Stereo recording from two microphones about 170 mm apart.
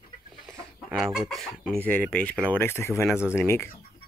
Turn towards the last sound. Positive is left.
turn(degrees=15)  # may be behind; listen again after turning